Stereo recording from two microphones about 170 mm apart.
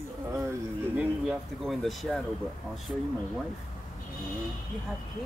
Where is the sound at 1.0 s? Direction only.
5° right (ahead or behind).